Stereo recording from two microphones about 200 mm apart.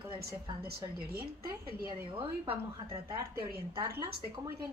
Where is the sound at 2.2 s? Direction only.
25° right (ahead or behind).